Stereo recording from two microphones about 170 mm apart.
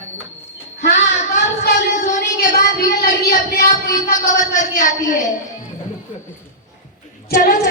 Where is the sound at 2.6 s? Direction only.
65° left (ahead or behind).